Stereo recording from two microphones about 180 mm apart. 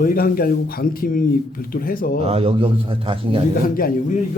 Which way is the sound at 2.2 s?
35° right (ahead or behind).